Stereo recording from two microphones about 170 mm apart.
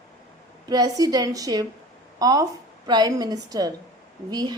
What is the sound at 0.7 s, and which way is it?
Speech, 25° right (ahead or behind).